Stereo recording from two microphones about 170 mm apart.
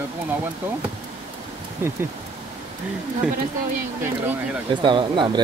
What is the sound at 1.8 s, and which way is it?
Speech, 15° right (ahead or behind).